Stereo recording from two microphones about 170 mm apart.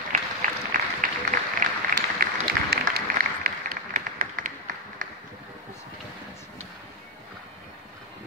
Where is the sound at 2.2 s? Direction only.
60° right (ahead or behind).